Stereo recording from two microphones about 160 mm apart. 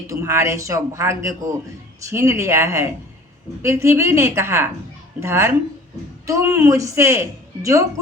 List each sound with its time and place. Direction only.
0.1 s a woman's voice: 15° right (ahead or behind)